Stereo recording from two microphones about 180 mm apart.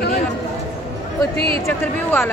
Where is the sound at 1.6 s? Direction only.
15° left (ahead or behind).